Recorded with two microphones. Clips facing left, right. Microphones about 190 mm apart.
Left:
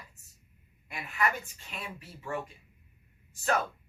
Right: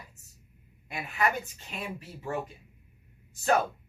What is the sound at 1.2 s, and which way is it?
A woman's voice, 25° right (ahead or behind).